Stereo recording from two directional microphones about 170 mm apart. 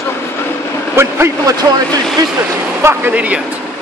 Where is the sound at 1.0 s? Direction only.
15° right (ahead or behind).